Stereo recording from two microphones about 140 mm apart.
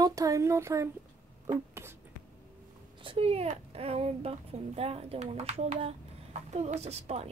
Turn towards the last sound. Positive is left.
turn(degrees=-50)  # may be behind; listen again after turning